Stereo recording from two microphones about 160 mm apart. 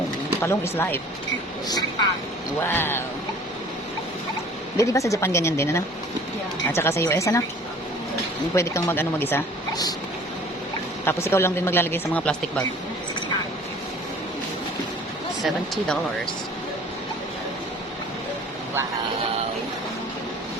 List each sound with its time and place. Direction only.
0.4 s speech: 15° left (ahead or behind)
2.6 s speech: 15° left (ahead or behind)
4.8 s speech: 20° left (ahead or behind)
8.5 s speech: 15° left (ahead or behind)
11.0 s speech: 15° left (ahead or behind)
15.4 s speech: centre (ahead or behind)